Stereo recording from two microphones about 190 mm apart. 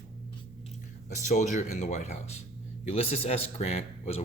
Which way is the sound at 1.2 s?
40° left (ahead or behind).